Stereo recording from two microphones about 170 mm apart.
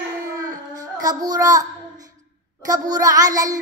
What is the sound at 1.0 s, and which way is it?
Child singing, 20° right (ahead or behind).